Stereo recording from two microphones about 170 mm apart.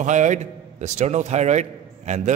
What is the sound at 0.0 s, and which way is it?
A man's voice, 45° right (ahead or behind).